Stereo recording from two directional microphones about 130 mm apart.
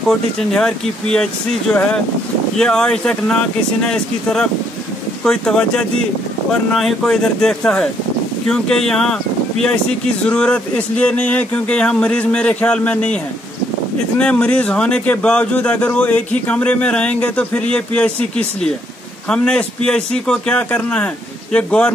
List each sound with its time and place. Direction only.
0.4 s speech: 5° left (ahead or behind)